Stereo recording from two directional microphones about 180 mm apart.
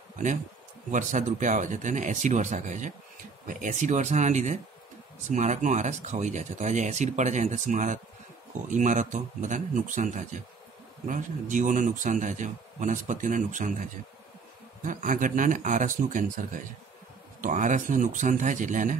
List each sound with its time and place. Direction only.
0.9 s speech: 45° right (ahead or behind)
17.4 s speech: 45° right (ahead or behind)